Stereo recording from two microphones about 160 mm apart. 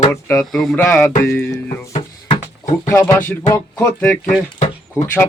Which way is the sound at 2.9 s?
15° left (ahead or behind).